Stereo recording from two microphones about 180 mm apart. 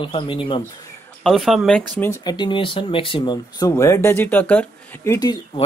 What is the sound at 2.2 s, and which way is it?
Speech, 25° left (ahead or behind).